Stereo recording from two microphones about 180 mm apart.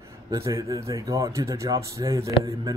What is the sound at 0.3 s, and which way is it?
Speech, 20° right (ahead or behind).